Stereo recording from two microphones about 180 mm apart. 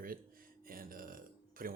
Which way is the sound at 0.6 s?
50° right (ahead or behind).